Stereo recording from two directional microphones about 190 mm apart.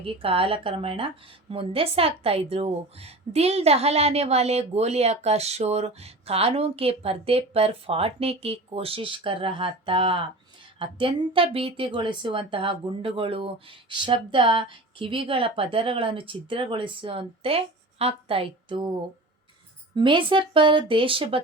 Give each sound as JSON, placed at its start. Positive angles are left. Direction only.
{"t": 0.0, "sound": "a woman's voice", "side_deg": -30}
{"t": 20.0, "sound": "speech", "side_deg": -25}